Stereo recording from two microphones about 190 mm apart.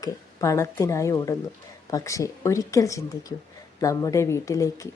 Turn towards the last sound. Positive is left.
turn(degrees=15)  # may be behind; listen again after turning